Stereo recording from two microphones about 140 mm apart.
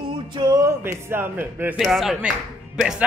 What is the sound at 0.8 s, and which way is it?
Speech, 15° right (ahead or behind).